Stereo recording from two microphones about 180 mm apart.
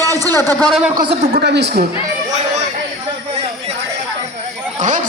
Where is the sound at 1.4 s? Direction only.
70° right (ahead or behind).